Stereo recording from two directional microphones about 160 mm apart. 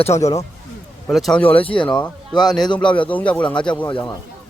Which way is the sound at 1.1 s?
Centre (ahead or behind).